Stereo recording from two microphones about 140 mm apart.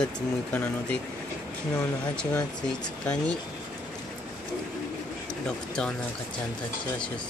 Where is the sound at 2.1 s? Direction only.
5° left (ahead or behind).